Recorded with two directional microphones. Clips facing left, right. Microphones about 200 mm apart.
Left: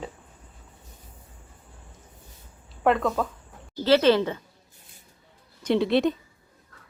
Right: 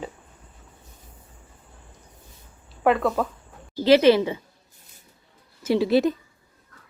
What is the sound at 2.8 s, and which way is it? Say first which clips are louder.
A woman's voice: right 2 dB; 5° right (ahead or behind).